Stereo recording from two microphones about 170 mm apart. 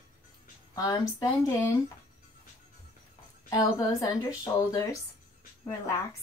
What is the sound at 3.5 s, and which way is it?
Speech, 20° left (ahead or behind).